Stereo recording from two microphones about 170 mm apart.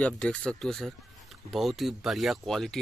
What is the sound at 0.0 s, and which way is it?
Speech, 5° left (ahead or behind).